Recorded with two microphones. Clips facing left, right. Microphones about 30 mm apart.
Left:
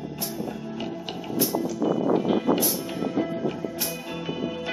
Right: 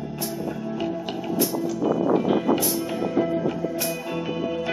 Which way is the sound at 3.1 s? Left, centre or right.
Centre.